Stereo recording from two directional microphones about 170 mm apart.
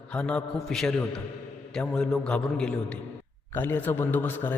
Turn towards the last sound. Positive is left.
turn(degrees=10)  # may be behind; listen again after turning